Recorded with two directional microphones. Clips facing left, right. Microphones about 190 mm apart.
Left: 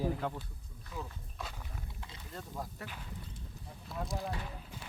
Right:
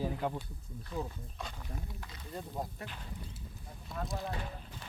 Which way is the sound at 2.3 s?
20° right (ahead or behind).